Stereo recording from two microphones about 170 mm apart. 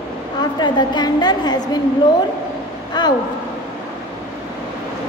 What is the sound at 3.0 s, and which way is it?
Speech, 25° left (ahead or behind).